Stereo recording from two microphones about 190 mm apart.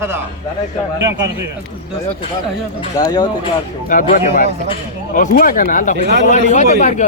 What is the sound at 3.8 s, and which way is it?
Speech, 45° left (ahead or behind).